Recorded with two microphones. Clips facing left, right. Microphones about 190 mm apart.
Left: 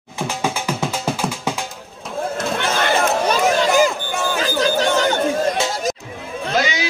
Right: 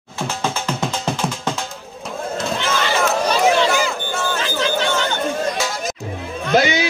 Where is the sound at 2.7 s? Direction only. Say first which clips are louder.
Left 1 dB; 50° left (ahead or behind).